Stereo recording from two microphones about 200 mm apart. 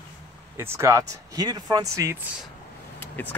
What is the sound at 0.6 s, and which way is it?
Speech, 15° right (ahead or behind).